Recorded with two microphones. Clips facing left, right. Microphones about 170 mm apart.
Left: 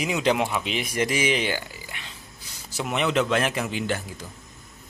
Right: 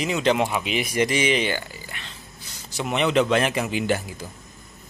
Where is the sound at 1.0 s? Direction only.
5° left (ahead or behind).